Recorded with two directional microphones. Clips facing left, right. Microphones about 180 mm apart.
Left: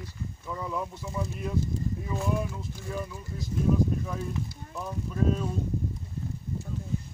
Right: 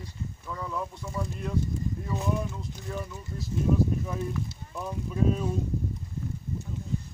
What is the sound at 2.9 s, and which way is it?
Speech, centre (ahead or behind).